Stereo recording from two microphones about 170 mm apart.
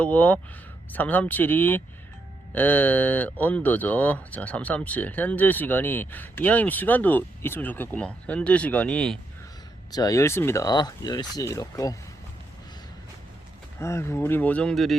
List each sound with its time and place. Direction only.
0.0 s speech: 10° left (ahead or behind)
9.9 s speech: 20° left (ahead or behind)
13.7 s speech: 15° left (ahead or behind)